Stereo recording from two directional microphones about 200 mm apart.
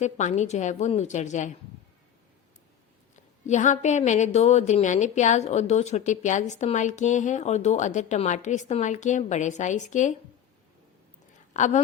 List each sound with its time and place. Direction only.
0.0 s a woman's voice: 35° left (ahead or behind)
3.4 s a woman's voice: 35° left (ahead or behind)
11.5 s speech: 35° left (ahead or behind)